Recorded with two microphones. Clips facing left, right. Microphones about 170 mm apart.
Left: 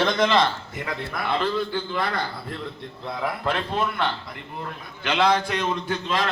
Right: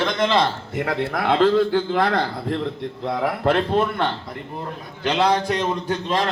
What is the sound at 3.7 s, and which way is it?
Speech, 45° right (ahead or behind).